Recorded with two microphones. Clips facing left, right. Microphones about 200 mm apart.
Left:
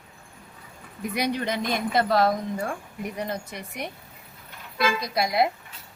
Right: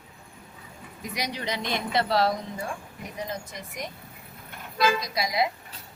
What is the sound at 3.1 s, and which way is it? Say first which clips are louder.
A woman's voice: even; 60° left (ahead or behind).